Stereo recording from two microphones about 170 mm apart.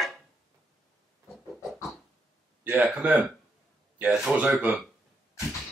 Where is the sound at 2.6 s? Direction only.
10° right (ahead or behind).